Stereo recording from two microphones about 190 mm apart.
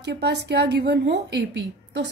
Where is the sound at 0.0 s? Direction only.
65° right (ahead or behind).